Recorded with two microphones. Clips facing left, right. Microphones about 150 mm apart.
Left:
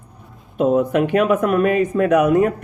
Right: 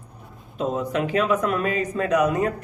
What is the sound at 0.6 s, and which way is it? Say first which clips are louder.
Speech: left 8 dB; 55° left (ahead or behind).